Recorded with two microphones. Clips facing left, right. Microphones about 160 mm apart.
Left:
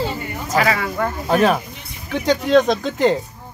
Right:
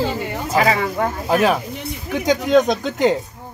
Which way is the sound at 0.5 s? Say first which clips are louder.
Right 1 dB; 30° right (ahead or behind).